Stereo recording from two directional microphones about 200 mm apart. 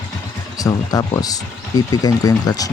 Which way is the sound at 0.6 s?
20° left (ahead or behind).